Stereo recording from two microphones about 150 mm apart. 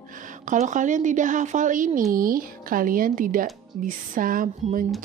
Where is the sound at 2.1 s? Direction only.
70° right (ahead or behind).